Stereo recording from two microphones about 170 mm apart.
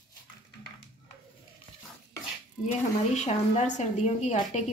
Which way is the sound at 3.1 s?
40° left (ahead or behind).